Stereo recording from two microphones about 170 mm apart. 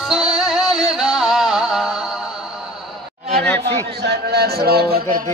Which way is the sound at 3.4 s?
10° left (ahead or behind).